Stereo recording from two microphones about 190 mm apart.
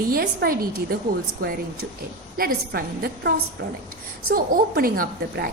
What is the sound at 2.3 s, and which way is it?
Speech, 50° right (ahead or behind).